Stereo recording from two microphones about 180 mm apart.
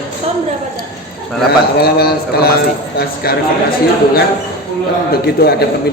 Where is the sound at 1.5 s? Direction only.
60° left (ahead or behind).